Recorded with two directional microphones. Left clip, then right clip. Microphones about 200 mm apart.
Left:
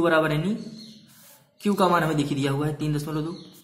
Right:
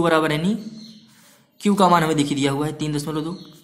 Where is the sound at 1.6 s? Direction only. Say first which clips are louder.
Right 5 dB; 40° right (ahead or behind).